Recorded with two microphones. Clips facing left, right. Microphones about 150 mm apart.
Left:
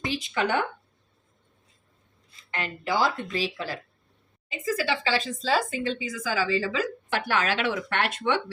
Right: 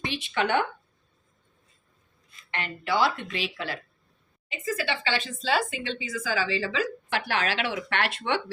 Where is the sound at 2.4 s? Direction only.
40° left (ahead or behind).